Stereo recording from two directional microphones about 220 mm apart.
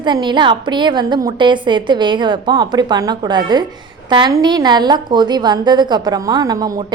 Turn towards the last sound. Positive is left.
turn(degrees=-15)  # may be behind; listen again after turning